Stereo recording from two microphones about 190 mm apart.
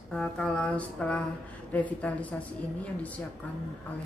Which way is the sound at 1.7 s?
10° left (ahead or behind).